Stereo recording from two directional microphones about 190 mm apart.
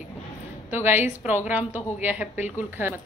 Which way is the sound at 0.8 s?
10° right (ahead or behind).